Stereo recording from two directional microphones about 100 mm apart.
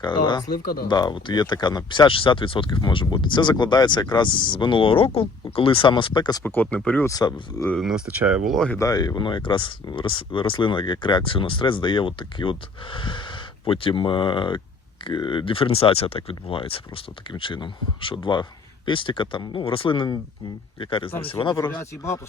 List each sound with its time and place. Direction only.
0.0 s speech: 50° left (ahead or behind)
6.4 s speech: 20° left (ahead or behind)
7.0 s speech: 40° left (ahead or behind)
7.8 s speech: 5° right (ahead or behind)
8.4 s speech: 5° left (ahead or behind)
8.8 s speech: 40° left (ahead or behind); by 21.5 s 60° left (ahead or behind)
21.5 s speech: 45° left (ahead or behind)
21.8 s speech: 30° left (ahead or behind)